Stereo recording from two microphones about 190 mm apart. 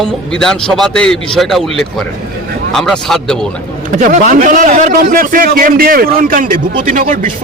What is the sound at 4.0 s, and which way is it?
A man's voice, 45° right (ahead or behind).